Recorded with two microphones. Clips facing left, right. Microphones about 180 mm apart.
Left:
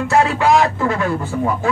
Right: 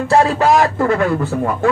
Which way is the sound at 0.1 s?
35° right (ahead or behind).